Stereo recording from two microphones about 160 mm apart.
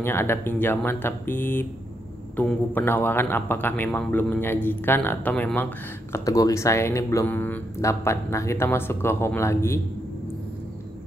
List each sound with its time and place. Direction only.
0.0 s speech: 15° left (ahead or behind)
6.1 s speech: 20° left (ahead or behind)